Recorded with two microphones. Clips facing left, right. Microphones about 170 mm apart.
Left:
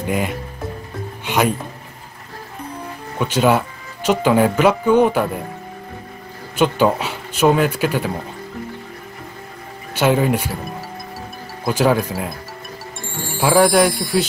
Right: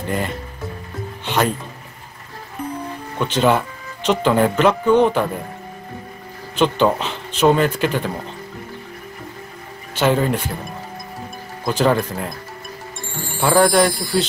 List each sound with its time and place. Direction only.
0.0 s speech: 10° left (ahead or behind)
1.2 s music: 10° left (ahead or behind)
3.2 s speech: 5° left (ahead or behind)
6.5 s speech: 10° left (ahead or behind)
9.9 s speech: 10° left (ahead or behind)
11.6 s speech: 5° left (ahead or behind)